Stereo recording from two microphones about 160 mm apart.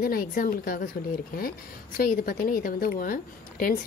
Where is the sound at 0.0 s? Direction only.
65° left (ahead or behind).